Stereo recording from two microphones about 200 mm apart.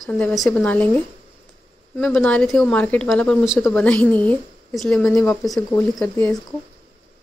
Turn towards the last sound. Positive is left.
turn(degrees=5)  # may be behind; listen again after turning